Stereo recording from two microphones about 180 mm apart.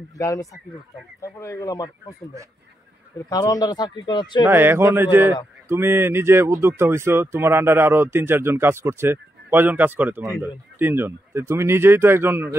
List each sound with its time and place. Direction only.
0.2 s speech: 15° left (ahead or behind)
3.3 s speech: 20° left (ahead or behind)
4.5 s speech: 10° right (ahead or behind)